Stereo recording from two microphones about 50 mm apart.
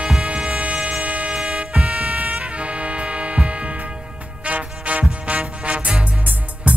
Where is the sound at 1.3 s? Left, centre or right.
Centre.